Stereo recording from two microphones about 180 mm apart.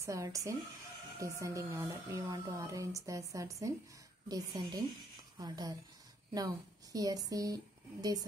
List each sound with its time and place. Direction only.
0.0 s speech: 15° right (ahead or behind)